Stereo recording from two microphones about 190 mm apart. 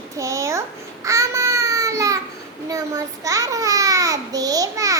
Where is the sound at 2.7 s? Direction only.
20° right (ahead or behind).